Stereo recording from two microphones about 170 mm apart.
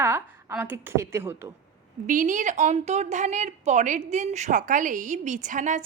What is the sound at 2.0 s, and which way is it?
A woman's voice, 50° right (ahead or behind).